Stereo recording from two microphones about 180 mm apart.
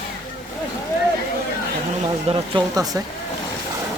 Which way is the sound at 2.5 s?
20° right (ahead or behind).